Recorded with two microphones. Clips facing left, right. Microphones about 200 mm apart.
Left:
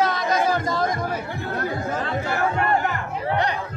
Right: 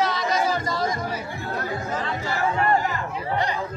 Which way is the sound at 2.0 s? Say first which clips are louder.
Left 3 dB; 55° left (ahead or behind).